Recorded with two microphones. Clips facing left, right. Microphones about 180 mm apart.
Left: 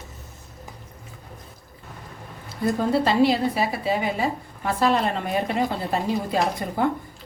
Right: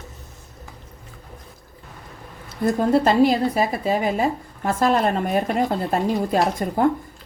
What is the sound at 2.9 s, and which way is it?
A woman's voice, 45° right (ahead or behind).